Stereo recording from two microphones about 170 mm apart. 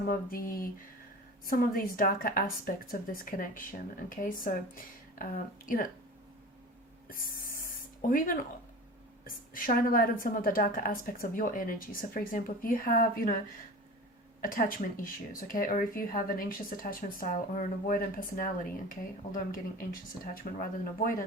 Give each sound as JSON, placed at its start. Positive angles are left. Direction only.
{"t": 0.1, "sound": "a woman's voice", "side_deg": 55}
{"t": 7.6, "sound": "a sound", "side_deg": 55}
{"t": 9.2, "sound": "a woman's voice", "side_deg": 55}
{"t": 14.4, "sound": "a woman's voice", "side_deg": 55}